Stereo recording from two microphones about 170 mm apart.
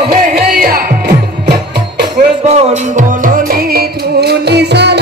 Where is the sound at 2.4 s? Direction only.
45° right (ahead or behind).